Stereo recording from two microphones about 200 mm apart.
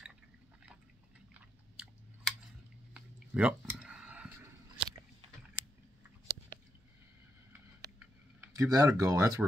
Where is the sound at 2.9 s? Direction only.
5° right (ahead or behind).